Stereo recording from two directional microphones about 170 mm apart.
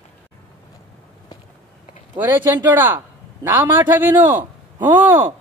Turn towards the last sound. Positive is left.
turn(degrees=-15)  # may be behind; listen again after turning